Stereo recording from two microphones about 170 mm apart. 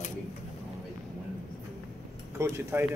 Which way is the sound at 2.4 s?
15° right (ahead or behind).